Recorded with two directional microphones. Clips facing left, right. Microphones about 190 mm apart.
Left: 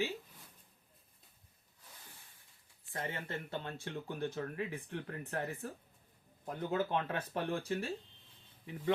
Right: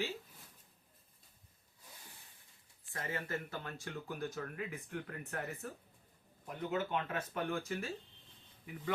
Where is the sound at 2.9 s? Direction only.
25° left (ahead or behind).